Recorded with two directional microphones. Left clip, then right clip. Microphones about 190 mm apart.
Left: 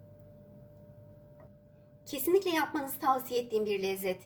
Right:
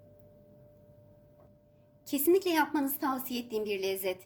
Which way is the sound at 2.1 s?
60° right (ahead or behind).